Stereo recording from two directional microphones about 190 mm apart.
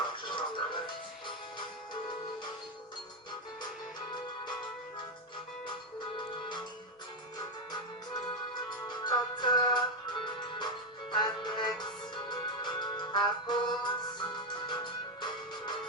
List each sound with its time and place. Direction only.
0.3 s music: 25° left (ahead or behind)
8.9 s music: 25° left (ahead or behind)